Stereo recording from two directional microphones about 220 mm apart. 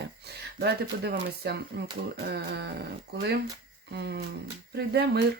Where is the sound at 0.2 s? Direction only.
50° right (ahead or behind).